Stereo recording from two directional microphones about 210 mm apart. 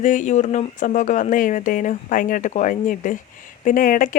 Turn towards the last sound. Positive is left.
turn(degrees=40)  # may be behind; listen again after turning